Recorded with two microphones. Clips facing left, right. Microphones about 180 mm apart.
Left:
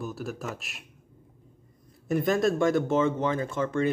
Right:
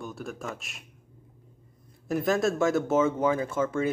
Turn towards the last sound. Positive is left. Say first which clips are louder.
# even
turn(degrees=-5)  # may be behind; listen again after turning